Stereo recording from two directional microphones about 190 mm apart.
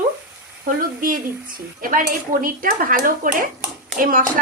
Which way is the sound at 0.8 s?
45° right (ahead or behind).